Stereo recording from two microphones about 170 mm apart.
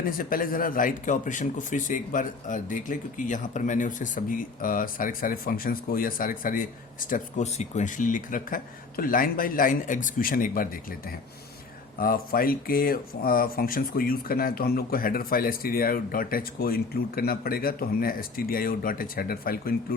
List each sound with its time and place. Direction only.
0.0 s speech: 55° left (ahead or behind)
7.1 s speech: 40° left (ahead or behind); by 19.7 s 60° left (ahead or behind)